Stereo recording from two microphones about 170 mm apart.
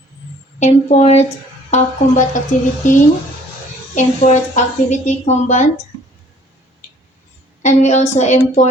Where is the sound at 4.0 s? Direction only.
45° left (ahead or behind).